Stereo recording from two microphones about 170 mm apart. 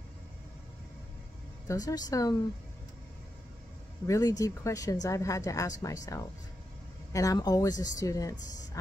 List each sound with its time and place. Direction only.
1.7 s speech: 20° left (ahead or behind)
4.1 s speech: 20° left (ahead or behind)
7.1 s speech: 20° left (ahead or behind)